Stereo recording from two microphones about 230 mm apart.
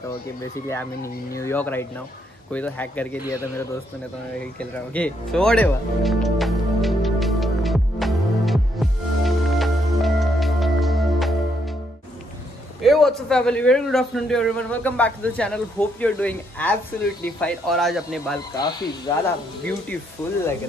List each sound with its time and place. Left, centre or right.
0.7 s speech: centre
4.6 s music: centre
12.8 s a man's voice: centre
18.6 s speech: centre